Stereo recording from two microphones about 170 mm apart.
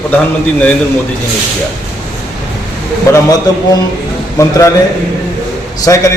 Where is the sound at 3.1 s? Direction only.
20° left (ahead or behind).